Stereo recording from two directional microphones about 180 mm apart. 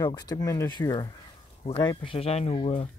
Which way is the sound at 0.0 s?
20° left (ahead or behind).